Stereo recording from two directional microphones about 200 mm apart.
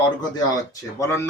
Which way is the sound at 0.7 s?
15° left (ahead or behind).